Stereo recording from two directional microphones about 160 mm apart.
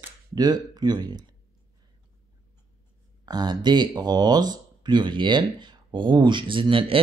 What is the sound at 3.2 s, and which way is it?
Speech, 25° right (ahead or behind).